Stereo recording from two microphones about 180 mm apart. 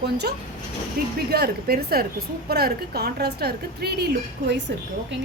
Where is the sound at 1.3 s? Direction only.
65° right (ahead or behind).